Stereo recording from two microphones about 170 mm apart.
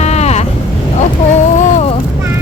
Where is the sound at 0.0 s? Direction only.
40° left (ahead or behind).